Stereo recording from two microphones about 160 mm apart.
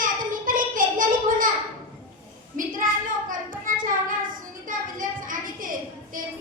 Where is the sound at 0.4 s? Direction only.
60° right (ahead or behind).